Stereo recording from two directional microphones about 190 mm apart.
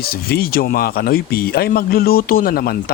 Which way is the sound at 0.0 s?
55° left (ahead or behind).